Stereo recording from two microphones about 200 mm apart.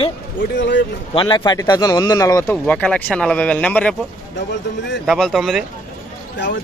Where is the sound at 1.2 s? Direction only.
20° left (ahead or behind); by 3.9 s 5° left (ahead or behind).